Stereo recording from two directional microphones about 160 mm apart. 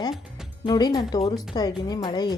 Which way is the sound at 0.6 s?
25° left (ahead or behind).